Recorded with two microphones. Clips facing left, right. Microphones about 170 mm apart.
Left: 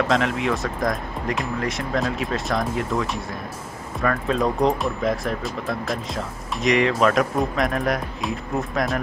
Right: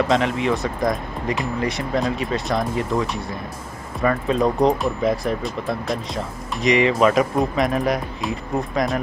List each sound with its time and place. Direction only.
0.1 s speech: centre (ahead or behind)